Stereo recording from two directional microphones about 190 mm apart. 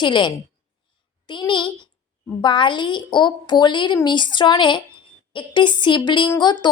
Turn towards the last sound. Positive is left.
turn(degrees=25)  # may be behind; listen again after turning